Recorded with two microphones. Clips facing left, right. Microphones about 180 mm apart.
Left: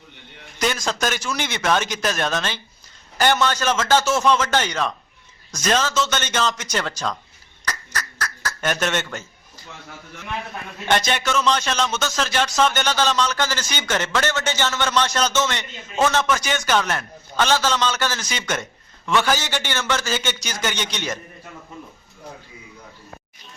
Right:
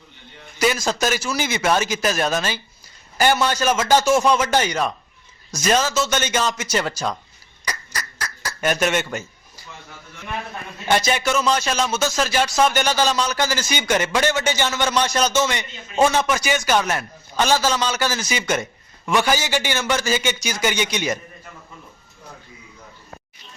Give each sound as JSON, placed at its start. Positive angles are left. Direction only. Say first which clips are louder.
{"t": 0.6, "sound": "speech", "louder": "right 3 dB", "side_deg": -5}
{"t": 7.6, "sound": "a sound", "louder": "left 1 dB", "side_deg": -10}
{"t": 10.8, "sound": "speech", "louder": "right 2 dB", "side_deg": -10}